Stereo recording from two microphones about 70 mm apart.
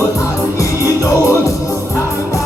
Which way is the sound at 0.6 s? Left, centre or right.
Left.